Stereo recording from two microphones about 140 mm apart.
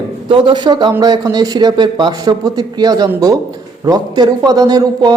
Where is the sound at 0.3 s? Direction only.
40° right (ahead or behind).